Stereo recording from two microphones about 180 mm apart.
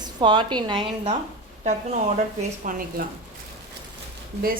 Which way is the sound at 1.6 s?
40° right (ahead or behind).